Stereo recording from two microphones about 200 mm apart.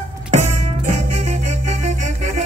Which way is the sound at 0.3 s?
35° right (ahead or behind).